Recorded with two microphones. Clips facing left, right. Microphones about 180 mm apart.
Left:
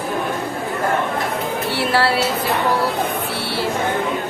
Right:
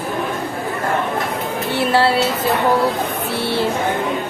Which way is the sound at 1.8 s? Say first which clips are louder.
Right 3 dB; 20° right (ahead or behind).